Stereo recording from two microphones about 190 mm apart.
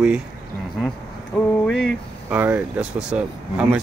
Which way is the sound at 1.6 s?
5° left (ahead or behind).